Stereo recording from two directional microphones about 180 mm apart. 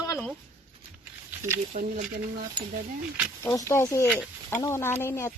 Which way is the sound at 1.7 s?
50° right (ahead or behind).